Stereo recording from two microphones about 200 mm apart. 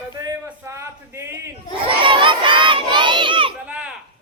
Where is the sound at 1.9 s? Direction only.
25° right (ahead or behind).